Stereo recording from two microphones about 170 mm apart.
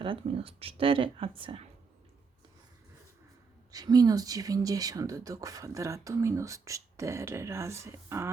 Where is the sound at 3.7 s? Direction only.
20° right (ahead or behind).